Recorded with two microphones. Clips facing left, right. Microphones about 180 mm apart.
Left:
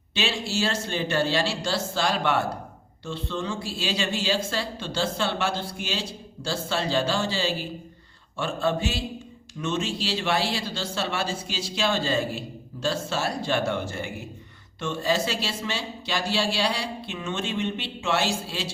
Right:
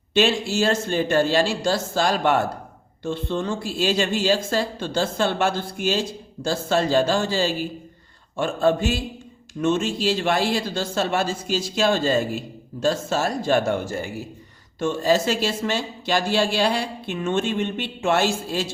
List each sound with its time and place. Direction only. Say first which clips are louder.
0.1 s a woman's voice: right 8 dB; 50° right (ahead or behind)